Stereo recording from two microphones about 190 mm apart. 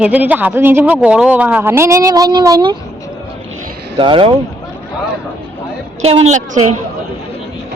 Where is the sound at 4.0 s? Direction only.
25° right (ahead or behind).